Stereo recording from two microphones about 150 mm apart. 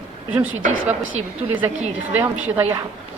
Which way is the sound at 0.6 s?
60° right (ahead or behind).